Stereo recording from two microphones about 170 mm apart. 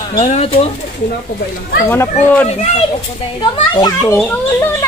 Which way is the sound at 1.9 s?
15° left (ahead or behind).